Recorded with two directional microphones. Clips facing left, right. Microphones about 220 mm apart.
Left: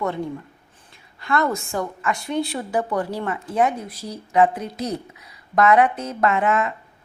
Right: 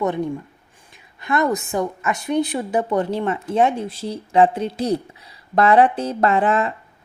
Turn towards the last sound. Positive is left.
turn(degrees=-30)  # may be behind; listen again after turning